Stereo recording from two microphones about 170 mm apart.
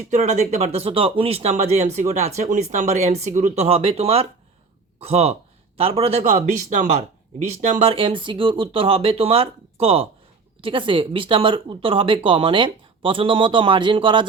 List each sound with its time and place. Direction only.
0.1 s speech: 40° right (ahead or behind)